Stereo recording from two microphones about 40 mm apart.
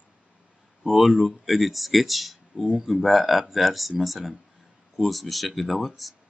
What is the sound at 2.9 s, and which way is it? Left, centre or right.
Speech, centre.